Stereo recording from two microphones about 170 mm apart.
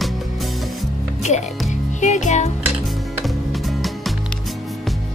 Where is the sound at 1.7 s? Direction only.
45° left (ahead or behind).